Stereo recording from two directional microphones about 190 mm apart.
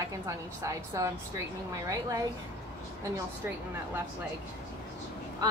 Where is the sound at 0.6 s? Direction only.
15° right (ahead or behind).